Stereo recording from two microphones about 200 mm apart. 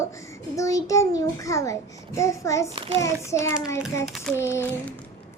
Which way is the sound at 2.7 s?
25° right (ahead or behind).